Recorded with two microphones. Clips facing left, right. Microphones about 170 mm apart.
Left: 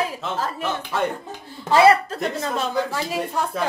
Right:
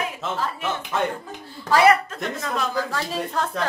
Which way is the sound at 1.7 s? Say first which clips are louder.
Left 2 dB; 30° left (ahead or behind).